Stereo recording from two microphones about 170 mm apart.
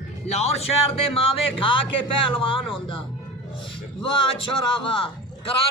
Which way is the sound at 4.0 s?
30° left (ahead or behind).